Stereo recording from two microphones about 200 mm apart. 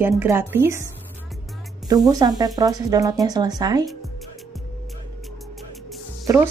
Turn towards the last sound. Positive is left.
turn(degrees=-10)  # may be behind; listen again after turning